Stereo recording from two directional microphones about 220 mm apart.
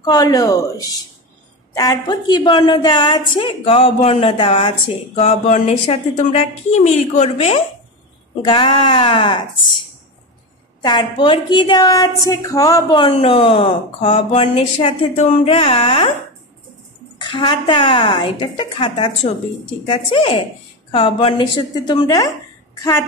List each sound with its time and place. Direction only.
0.0 s a woman's voice: 20° left (ahead or behind)
17.2 s a woman's voice: 20° left (ahead or behind)